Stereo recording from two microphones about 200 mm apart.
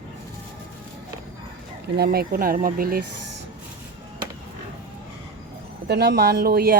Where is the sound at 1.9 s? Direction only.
50° right (ahead or behind).